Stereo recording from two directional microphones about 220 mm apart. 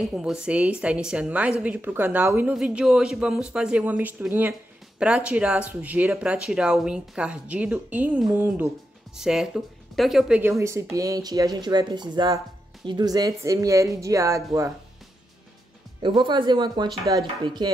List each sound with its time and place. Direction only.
0.1 s speech: 5° right (ahead or behind)
16.0 s speech: 20° right (ahead or behind)